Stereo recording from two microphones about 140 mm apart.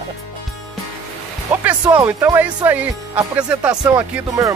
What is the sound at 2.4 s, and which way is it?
Speech, 10° right (ahead or behind).